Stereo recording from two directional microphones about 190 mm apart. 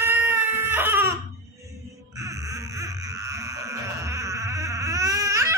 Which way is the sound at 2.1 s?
15° right (ahead or behind).